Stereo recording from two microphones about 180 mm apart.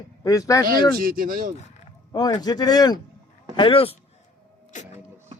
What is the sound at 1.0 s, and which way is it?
Speech, 55° right (ahead or behind).